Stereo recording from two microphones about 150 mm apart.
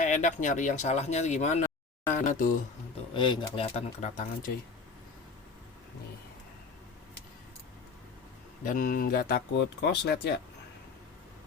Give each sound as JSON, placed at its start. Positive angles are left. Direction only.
{"t": 0.0, "sound": "speech", "side_deg": 55}
{"t": 3.1, "sound": "speech", "side_deg": 30}
{"t": 8.6, "sound": "speech", "side_deg": 60}